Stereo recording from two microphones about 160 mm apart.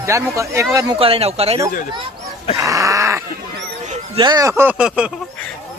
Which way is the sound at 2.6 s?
20° right (ahead or behind).